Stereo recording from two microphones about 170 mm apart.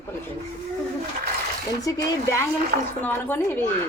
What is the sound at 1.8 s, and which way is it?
Speech, 20° left (ahead or behind).